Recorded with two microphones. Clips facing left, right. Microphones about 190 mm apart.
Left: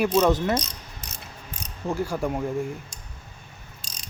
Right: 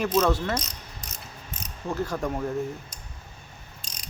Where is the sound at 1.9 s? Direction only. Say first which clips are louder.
Left 2 dB; 10° left (ahead or behind).